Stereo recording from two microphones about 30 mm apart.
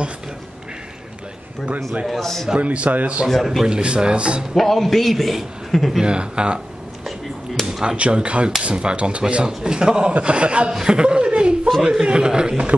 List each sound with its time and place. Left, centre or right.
2.0 s a man's voice: centre
2.6 s speech: right
3.2 s a man's voice: centre
3.6 s speech: right
4.6 s a man's voice: centre
6.0 s speech: right
7.6 s a sound: centre
8.0 s a man's voice: right
10.8 s a man's voice: right